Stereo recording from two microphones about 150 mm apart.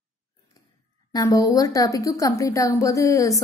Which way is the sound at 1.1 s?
25° left (ahead or behind).